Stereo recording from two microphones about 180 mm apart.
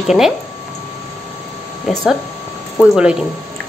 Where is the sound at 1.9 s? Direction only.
Centre (ahead or behind).